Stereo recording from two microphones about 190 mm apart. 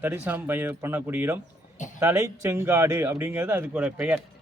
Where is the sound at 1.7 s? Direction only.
40° left (ahead or behind).